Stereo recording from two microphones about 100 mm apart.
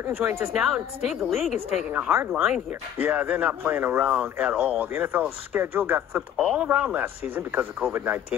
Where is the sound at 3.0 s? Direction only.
15° right (ahead or behind).